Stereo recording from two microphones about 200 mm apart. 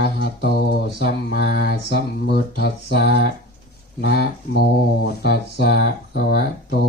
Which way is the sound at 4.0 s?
55° left (ahead or behind).